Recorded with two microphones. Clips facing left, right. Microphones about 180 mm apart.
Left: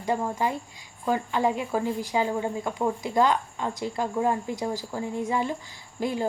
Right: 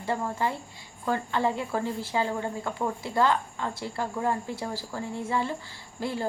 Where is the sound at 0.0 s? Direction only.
15° left (ahead or behind).